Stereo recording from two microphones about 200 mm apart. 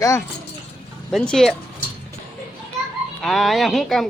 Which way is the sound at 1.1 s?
Centre (ahead or behind).